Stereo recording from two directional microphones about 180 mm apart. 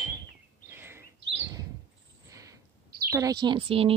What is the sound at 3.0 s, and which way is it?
Speech, 15° right (ahead or behind).